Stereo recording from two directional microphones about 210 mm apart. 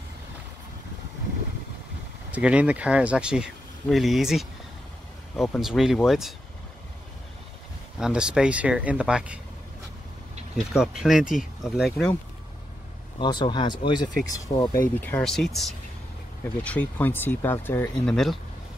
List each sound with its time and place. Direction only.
2.3 s speech: 5° right (ahead or behind)
8.0 s speech: 5° right (ahead or behind)
10.7 s speech: 5° right (ahead or behind)
13.2 s speech: 20° left (ahead or behind); by 18.4 s centre (ahead or behind)